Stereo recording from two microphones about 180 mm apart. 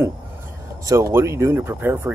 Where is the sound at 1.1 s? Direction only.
15° right (ahead or behind).